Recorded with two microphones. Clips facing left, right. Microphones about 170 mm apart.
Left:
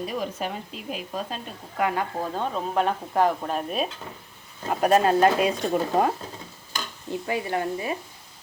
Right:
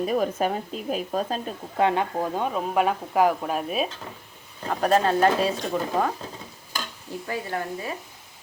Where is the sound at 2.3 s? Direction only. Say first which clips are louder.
Right 1 dB; 10° right (ahead or behind).